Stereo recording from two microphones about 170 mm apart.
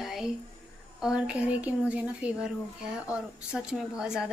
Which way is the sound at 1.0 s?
5° right (ahead or behind).